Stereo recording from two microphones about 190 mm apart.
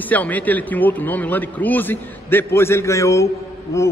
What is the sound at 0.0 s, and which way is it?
A man's voice, 10° left (ahead or behind).